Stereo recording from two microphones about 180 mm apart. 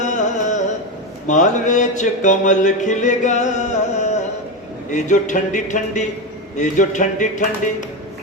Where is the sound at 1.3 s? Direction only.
40° left (ahead or behind).